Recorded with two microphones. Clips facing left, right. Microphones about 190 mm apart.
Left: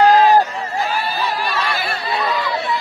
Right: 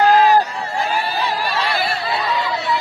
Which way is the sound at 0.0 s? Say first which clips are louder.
Left 1 dB; 35° left (ahead or behind).